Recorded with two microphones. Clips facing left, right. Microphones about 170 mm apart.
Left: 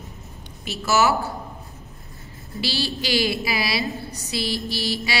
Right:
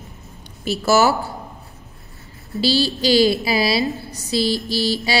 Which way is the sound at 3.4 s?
30° right (ahead or behind).